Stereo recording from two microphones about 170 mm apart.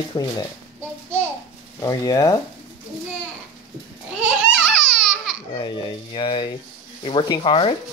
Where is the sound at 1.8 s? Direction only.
20° left (ahead or behind).